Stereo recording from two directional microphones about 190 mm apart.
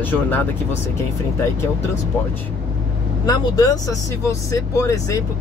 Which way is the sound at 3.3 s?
20° left (ahead or behind).